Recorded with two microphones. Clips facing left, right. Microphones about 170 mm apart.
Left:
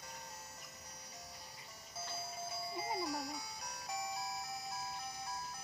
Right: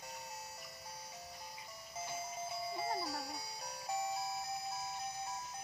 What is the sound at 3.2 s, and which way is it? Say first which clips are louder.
Music: even; 30° right (ahead or behind).